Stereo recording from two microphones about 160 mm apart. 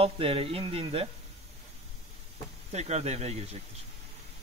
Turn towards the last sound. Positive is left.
turn(degrees=-40)  # may be behind; listen again after turning